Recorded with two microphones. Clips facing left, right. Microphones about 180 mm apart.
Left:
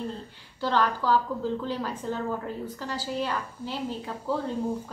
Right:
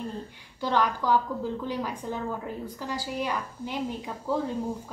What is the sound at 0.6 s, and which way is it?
A woman's voice, 15° right (ahead or behind).